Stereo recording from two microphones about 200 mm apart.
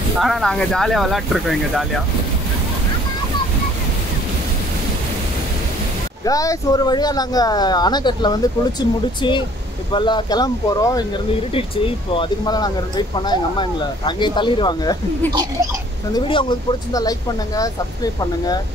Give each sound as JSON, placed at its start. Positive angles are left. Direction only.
{"t": 0.2, "sound": "speech", "side_deg": 0}
{"t": 6.2, "sound": "speech", "side_deg": 15}
{"t": 16.1, "sound": "speech", "side_deg": 25}